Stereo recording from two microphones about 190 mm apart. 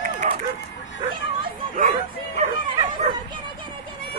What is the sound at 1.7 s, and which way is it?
Bow-wow, 45° right (ahead or behind).